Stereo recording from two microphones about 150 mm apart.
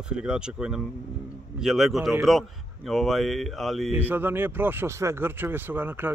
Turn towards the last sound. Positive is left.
turn(degrees=-15)  # may be behind; listen again after turning